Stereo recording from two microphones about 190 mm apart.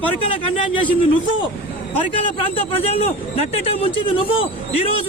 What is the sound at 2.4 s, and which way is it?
Speech, 30° left (ahead or behind).